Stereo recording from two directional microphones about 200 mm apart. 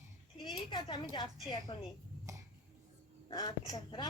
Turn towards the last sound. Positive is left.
turn(degrees=20)  # may be behind; listen again after turning